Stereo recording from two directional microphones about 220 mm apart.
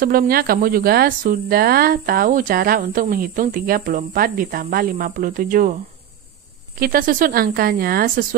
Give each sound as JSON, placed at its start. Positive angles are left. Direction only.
{"t": 0.0, "sound": "speech", "side_deg": -40}
{"t": 6.8, "sound": "speech", "side_deg": -40}